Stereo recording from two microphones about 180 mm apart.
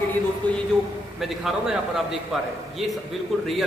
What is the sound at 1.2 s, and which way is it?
Speech, centre (ahead or behind).